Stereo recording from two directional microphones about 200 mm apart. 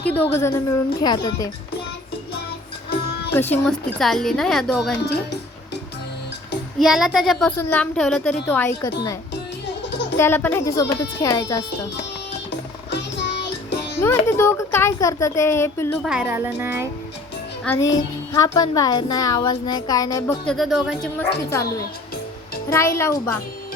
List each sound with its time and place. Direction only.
0.0 s a woman's voice: 10° left (ahead or behind)
3.5 s a woman's voice: 5° left (ahead or behind)
6.7 s a woman's voice: 5° right (ahead or behind); by 9.1 s 15° left (ahead or behind)
10.2 s speech: 10° left (ahead or behind)
14.0 s speech: 10° left (ahead or behind)
16.0 s speech: 5° right (ahead or behind)
17.7 s a woman's voice: 15° left (ahead or behind)
20.5 s a woman's voice: centre (ahead or behind)
21.2 s speech: 15° left (ahead or behind)